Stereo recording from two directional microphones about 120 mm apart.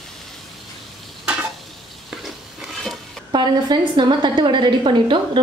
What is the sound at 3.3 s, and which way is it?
A woman's voice, 40° right (ahead or behind).